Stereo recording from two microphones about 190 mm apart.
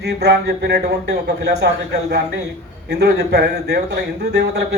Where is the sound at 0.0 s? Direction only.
60° right (ahead or behind).